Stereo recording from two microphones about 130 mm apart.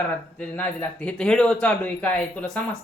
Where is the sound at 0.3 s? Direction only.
10° left (ahead or behind).